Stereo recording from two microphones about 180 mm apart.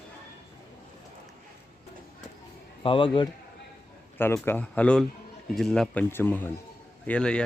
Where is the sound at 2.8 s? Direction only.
30° left (ahead or behind).